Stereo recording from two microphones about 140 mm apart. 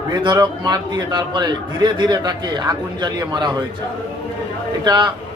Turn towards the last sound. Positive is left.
turn(degrees=-30)  # may be behind; listen again after turning